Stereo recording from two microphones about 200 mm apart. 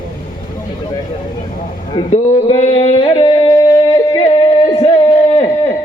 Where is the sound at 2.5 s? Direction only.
25° left (ahead or behind).